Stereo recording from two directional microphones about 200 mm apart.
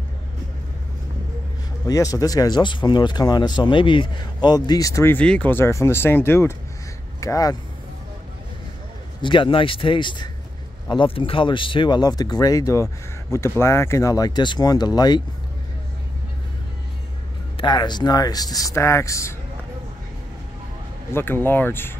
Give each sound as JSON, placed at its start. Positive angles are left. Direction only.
{"t": 1.9, "sound": "speech", "side_deg": 15}
{"t": 9.2, "sound": "speech", "side_deg": 25}
{"t": 17.6, "sound": "speech", "side_deg": 20}
{"t": 21.1, "sound": "speech", "side_deg": 10}